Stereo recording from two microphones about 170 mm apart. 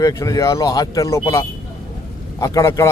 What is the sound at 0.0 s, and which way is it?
Speech, 20° left (ahead or behind).